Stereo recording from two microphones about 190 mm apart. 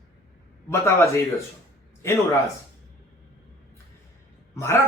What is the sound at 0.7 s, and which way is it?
A man's voice, 15° left (ahead or behind).